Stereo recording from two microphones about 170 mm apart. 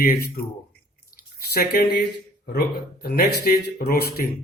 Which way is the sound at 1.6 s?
70° left (ahead or behind).